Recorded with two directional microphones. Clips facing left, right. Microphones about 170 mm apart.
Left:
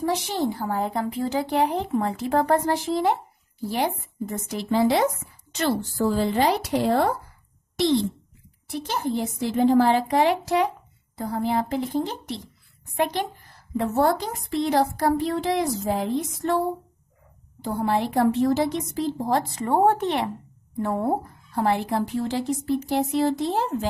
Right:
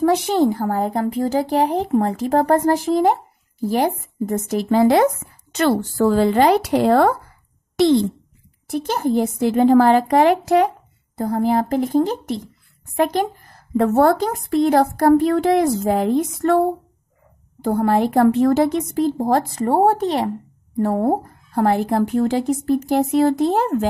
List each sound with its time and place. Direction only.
0.0 s a woman's voice: 55° right (ahead or behind)
8.6 s a woman's voice: 45° right (ahead or behind)